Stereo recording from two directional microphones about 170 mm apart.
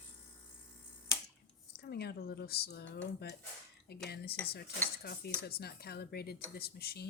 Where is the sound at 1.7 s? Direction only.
70° left (ahead or behind).